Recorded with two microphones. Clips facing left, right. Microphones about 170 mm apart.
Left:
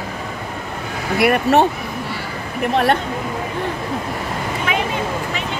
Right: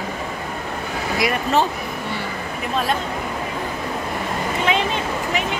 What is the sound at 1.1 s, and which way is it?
Speech, 65° left (ahead or behind).